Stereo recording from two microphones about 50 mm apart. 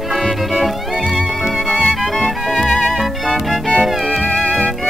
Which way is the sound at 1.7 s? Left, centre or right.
Left.